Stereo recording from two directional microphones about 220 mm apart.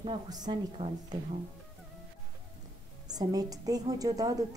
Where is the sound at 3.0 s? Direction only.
15° right (ahead or behind).